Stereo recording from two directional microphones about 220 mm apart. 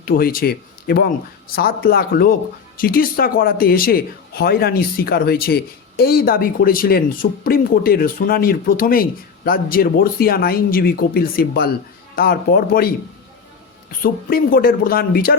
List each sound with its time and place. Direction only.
0.0 s a man's voice: 40° left (ahead or behind)
14.0 s a man's voice: 40° left (ahead or behind)